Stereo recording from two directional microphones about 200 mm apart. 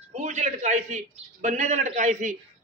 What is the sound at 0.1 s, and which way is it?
A man's voice, 35° right (ahead or behind).